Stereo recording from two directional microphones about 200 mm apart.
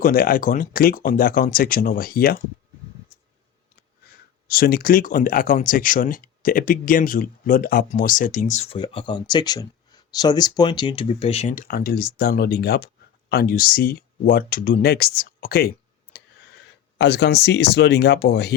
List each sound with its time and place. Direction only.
0.0 s speech: 45° left (ahead or behind)
4.4 s speech: 50° left (ahead or behind)
17.0 s speech: 60° left (ahead or behind)